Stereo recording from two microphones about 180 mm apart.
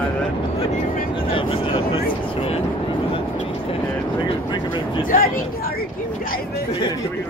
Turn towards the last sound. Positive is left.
turn(degrees=50)  # may be behind; listen again after turning